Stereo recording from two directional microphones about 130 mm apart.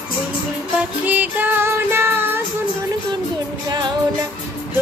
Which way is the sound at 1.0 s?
15° right (ahead or behind).